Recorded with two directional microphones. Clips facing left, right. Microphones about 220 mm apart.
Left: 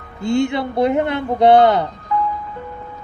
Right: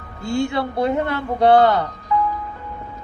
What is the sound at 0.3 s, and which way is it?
Speech, 20° left (ahead or behind).